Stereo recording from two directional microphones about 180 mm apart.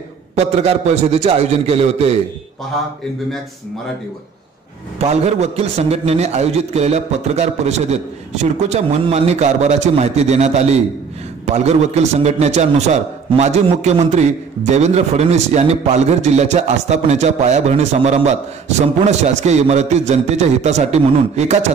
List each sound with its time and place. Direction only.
0.6 s a man's voice: 35° right (ahead or behind)
4.9 s a man's voice: 35° right (ahead or behind)